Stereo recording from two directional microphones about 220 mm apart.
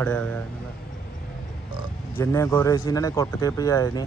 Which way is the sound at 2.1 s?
15° left (ahead or behind).